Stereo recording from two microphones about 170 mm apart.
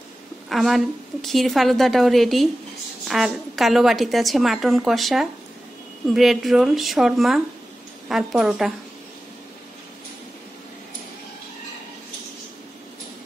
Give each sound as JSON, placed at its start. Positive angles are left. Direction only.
{"t": 0.5, "sound": "a woman's voice", "side_deg": 0}